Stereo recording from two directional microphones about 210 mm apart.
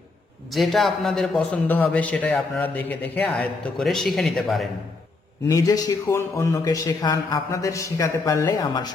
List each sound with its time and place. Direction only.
0.5 s speech: centre (ahead or behind)
5.5 s speech: 15° left (ahead or behind)